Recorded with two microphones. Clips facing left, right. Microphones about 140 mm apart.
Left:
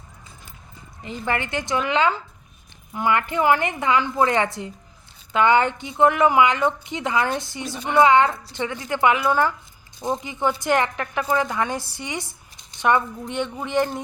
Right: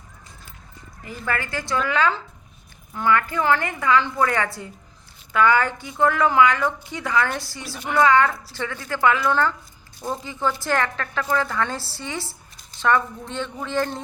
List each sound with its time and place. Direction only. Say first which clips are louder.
1.0 s a woman's voice: left 2 dB; 20° left (ahead or behind)